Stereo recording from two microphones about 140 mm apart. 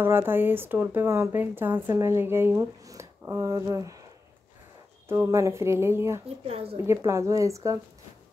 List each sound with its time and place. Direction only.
0.0 s speech: 15° right (ahead or behind)
5.0 s speech: 20° right (ahead or behind)
6.4 s speech: 45° right (ahead or behind)
6.9 s speech: 20° right (ahead or behind)